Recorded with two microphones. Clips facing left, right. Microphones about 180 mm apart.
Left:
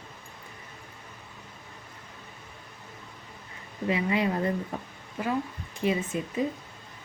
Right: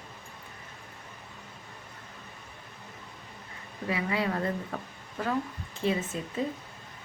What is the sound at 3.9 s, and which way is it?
Speech, 20° left (ahead or behind).